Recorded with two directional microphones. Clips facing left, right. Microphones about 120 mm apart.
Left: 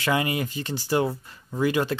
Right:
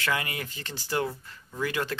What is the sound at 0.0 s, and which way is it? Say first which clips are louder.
Speech: left 6 dB; 20° left (ahead or behind).